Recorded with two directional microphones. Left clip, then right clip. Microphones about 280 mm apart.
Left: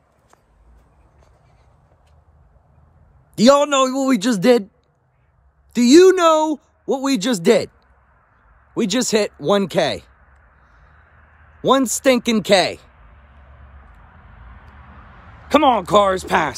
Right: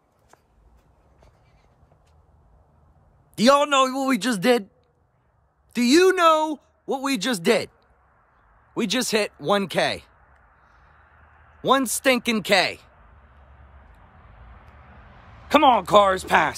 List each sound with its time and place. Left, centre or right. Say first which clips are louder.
3.3 s speech: left 4 dB; centre
5.7 s speech: left 7 dB; centre
8.7 s speech: left 4 dB; centre
11.0 s a sound: left 2 dB; right
11.6 s speech: left 4 dB; centre
15.4 s speech: left 2 dB; centre